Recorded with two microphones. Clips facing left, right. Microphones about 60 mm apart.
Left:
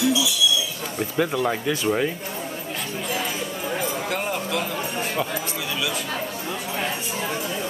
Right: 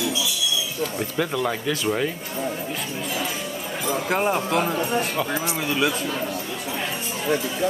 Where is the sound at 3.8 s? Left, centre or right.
Right.